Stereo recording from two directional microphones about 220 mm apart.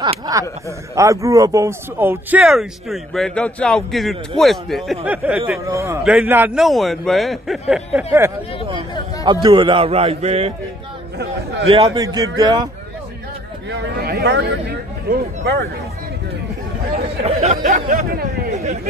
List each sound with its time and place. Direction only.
0.0 s speech: 15° right (ahead or behind)
9.2 s a man's voice: 20° right (ahead or behind)
11.6 s a man's voice: 25° right (ahead or behind)
13.7 s speech: 45° right (ahead or behind)
17.2 s a man's voice: 30° right (ahead or behind)
17.6 s speech: 40° right (ahead or behind)